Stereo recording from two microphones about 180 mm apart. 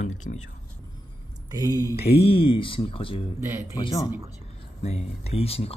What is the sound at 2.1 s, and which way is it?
Speech, 30° left (ahead or behind).